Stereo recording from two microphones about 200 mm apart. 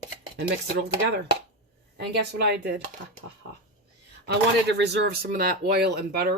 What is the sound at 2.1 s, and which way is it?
Speech, 55° right (ahead or behind).